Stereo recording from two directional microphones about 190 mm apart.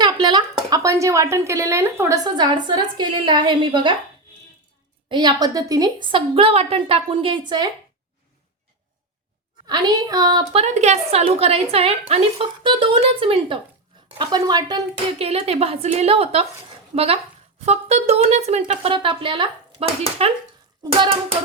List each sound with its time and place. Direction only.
0.0 s speech: 25° right (ahead or behind)
5.0 s speech: 25° right (ahead or behind)
9.6 s speech: 20° right (ahead or behind)
10.5 s a woman's voice: 35° right (ahead or behind)